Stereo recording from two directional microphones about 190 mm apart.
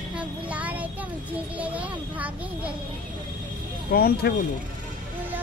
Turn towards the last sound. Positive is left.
turn(degrees=55)  # may be behind; listen again after turning